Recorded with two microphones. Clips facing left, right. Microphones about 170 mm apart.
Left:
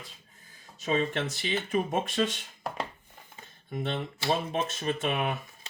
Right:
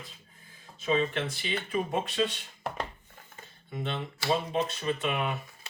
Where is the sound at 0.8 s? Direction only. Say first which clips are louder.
Even; 45° left (ahead or behind).